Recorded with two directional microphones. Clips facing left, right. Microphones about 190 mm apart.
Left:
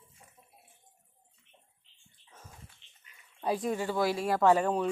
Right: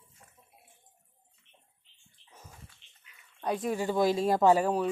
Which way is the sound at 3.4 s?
Centre (ahead or behind).